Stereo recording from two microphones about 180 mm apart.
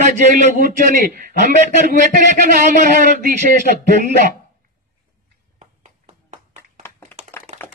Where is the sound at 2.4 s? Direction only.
50° right (ahead or behind).